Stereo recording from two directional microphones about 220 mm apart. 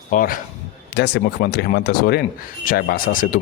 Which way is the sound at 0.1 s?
40° left (ahead or behind).